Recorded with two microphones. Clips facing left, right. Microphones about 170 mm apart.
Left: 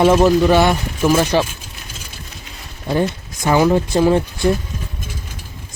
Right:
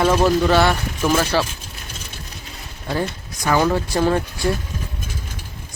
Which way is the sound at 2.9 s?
20° left (ahead or behind).